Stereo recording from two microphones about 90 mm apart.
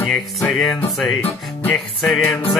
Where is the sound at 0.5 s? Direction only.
Centre (ahead or behind).